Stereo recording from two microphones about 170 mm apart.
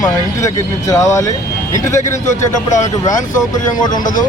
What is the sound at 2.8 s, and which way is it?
Speech, 20° left (ahead or behind).